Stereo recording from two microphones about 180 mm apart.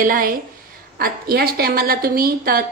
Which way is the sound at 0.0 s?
50° right (ahead or behind).